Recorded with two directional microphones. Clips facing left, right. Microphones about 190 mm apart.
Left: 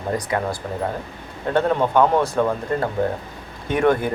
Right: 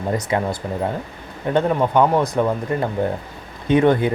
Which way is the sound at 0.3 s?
25° right (ahead or behind).